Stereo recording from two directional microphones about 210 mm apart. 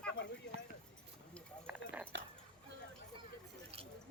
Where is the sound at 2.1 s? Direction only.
60° right (ahead or behind).